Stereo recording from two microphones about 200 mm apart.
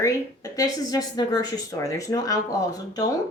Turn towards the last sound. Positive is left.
turn(degrees=20)  # may be behind; listen again after turning